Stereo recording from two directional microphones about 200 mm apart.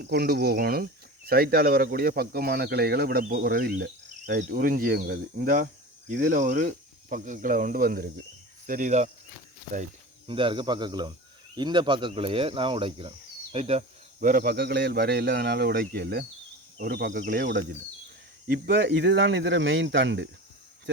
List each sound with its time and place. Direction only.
0.0 s speech: 50° right (ahead or behind)
10.2 s speech: 25° right (ahead or behind); by 20.3 s 65° right (ahead or behind)